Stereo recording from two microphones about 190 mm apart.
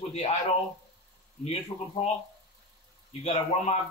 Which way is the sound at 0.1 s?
35° left (ahead or behind).